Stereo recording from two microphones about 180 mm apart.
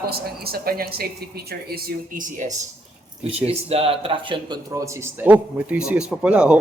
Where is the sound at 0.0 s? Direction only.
60° right (ahead or behind).